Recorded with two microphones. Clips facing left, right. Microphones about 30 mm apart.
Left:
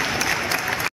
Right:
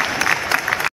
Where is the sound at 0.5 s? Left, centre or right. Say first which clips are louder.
Right 5 dB; right.